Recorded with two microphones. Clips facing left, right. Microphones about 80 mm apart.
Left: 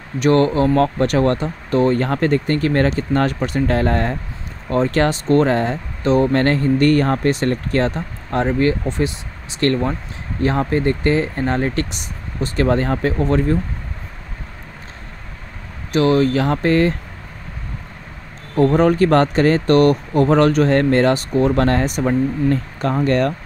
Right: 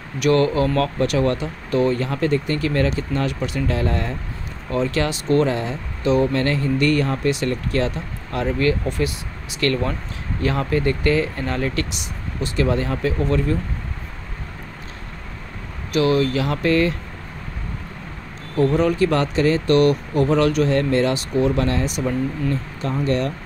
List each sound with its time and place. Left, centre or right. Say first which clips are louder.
0.2 s speech: left 3 dB; left
1.0 s speech: left 3 dB; left
15.9 s speech: left 3 dB; left
18.6 s speech: left 4 dB; left